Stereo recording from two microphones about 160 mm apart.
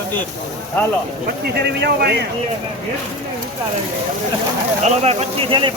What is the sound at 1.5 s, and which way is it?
Speech, 90° right.